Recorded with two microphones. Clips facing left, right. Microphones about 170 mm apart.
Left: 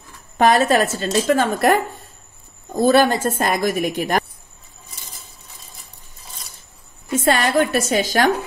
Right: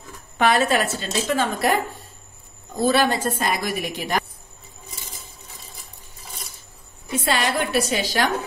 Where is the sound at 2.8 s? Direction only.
50° left (ahead or behind).